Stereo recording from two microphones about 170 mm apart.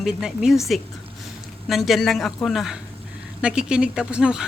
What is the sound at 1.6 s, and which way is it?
Speech, centre (ahead or behind).